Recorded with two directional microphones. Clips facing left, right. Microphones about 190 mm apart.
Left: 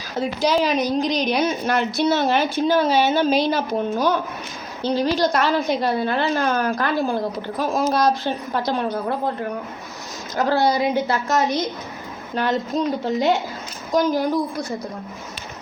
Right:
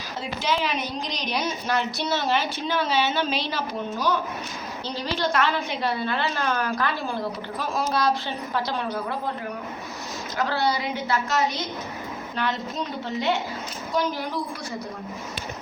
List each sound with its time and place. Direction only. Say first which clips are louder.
0.2 s a woman's voice: left 7 dB; 40° left (ahead or behind)
10.3 s a woman's voice: left 6 dB; 45° left (ahead or behind)